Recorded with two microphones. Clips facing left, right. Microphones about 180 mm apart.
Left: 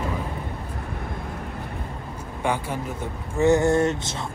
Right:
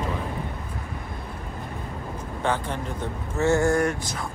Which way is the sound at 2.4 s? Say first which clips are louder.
Left 1 dB; 10° left (ahead or behind).